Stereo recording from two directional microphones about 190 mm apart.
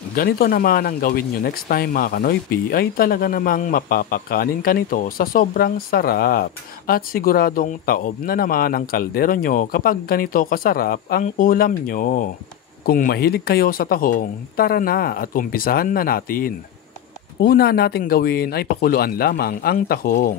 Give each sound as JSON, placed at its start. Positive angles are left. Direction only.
{"t": 0.1, "sound": "speech", "side_deg": 50}